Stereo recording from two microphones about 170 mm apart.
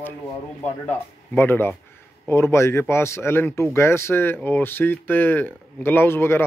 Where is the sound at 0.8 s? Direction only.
10° left (ahead or behind).